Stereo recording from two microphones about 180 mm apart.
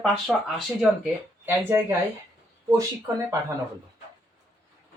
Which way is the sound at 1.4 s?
10° right (ahead or behind).